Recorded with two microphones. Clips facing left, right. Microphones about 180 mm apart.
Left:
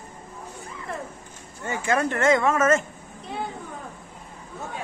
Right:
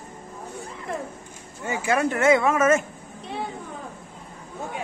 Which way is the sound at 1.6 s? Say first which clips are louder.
Right 1 dB; 10° right (ahead or behind).